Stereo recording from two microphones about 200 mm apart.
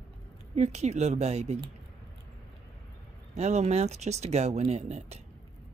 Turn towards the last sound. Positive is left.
turn(degrees=-35)  # may be behind; listen again after turning